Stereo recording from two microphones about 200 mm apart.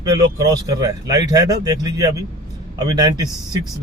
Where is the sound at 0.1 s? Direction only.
20° right (ahead or behind).